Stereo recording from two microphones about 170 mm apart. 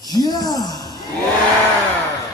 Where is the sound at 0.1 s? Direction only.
20° left (ahead or behind).